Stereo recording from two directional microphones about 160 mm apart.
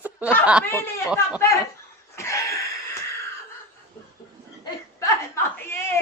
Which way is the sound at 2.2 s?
20° left (ahead or behind).